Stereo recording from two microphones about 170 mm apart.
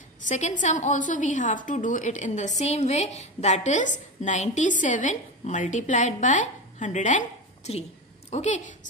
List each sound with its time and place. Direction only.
0.2 s a woman's voice: 45° left (ahead or behind)